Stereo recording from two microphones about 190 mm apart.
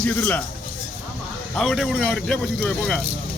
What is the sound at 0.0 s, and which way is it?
Speech, 5° left (ahead or behind).